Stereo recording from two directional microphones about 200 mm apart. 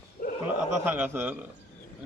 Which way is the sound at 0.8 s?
10° right (ahead or behind).